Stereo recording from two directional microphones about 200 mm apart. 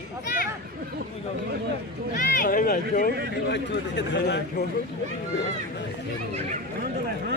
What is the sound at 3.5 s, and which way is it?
A man's voice, 60° left (ahead or behind).